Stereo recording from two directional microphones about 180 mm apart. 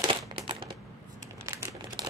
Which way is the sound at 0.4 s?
30° right (ahead or behind).